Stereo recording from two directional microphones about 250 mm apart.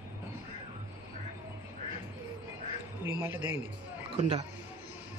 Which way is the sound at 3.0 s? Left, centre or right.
Centre.